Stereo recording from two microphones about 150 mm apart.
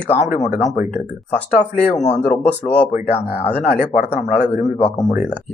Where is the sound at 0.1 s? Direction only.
50° left (ahead or behind).